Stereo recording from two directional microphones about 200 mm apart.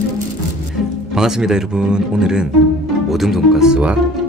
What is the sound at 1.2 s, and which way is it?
Speech, 5° right (ahead or behind).